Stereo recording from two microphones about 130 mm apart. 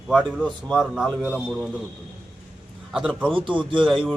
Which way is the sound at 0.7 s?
5° right (ahead or behind).